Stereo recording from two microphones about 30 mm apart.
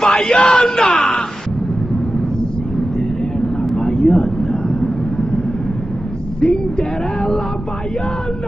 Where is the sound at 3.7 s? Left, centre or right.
Left.